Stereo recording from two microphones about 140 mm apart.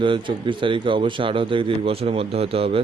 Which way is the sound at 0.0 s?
35° right (ahead or behind).